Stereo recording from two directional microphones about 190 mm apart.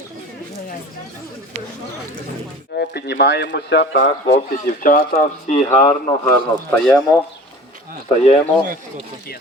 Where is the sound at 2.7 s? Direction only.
60° left (ahead or behind).